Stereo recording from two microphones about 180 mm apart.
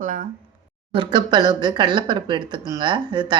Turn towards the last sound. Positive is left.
turn(degrees=-25)  # may be behind; listen again after turning